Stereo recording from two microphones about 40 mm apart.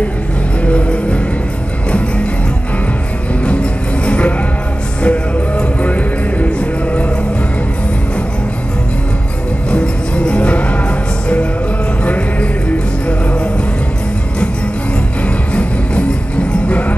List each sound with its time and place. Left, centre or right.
0.7 s music: left
3.4 s music: left
9.7 s music: left
12.0 s music: left
16.6 s music: left